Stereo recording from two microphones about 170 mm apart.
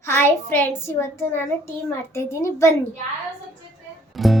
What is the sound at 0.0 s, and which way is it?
A woman's voice, 10° left (ahead or behind).